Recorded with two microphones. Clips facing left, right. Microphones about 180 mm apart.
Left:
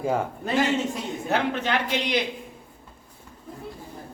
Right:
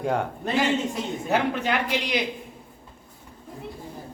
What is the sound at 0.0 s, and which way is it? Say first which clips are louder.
Speech: even; centre (ahead or behind).